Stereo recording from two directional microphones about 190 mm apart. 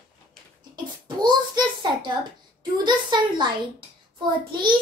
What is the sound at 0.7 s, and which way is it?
A child's voice, 20° right (ahead or behind).